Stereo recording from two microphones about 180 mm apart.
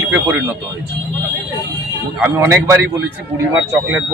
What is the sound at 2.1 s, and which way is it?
Speech, 10° right (ahead or behind).